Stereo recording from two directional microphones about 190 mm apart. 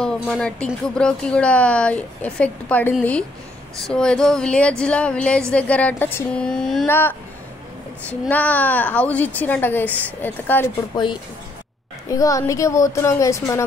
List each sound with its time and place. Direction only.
0.0 s speech: 5° left (ahead or behind)
10.9 s speech: 20° left (ahead or behind)